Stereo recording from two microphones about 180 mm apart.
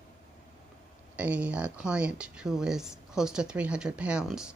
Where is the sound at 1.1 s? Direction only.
10° right (ahead or behind).